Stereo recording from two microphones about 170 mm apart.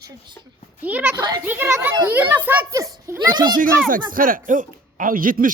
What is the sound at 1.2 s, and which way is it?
Speech, 25° right (ahead or behind).